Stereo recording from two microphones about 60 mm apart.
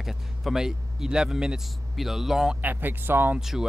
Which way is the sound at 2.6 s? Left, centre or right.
Right.